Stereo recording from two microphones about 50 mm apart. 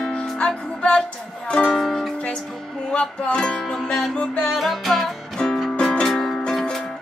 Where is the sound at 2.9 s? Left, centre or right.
Left.